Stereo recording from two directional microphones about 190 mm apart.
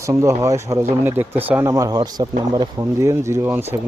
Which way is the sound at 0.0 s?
15° right (ahead or behind).